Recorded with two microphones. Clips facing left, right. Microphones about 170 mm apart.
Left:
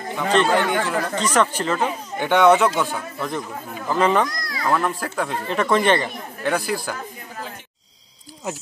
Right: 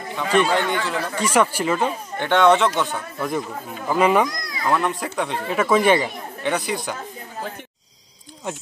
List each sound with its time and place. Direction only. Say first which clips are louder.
0.5 s speech: left 2 dB; 45° left (ahead or behind)
1.1 s speech: right 2 dB; 10° right (ahead or behind)
1.8 s speech: even; 10° left (ahead or behind)
3.2 s speech: right 5 dB; 10° right (ahead or behind)
4.3 s children playing: left 1 dB; 20° right (ahead or behind)
4.6 s speech: even; centre (ahead or behind)
6.4 s speech: left 1 dB; 5° left (ahead or behind)
8.5 s speech: left 1 dB; 5° left (ahead or behind)